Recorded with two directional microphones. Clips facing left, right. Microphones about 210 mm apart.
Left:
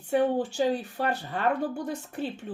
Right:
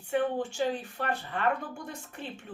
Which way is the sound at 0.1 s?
40° left (ahead or behind).